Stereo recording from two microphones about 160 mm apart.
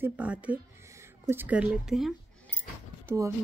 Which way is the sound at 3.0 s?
20° right (ahead or behind).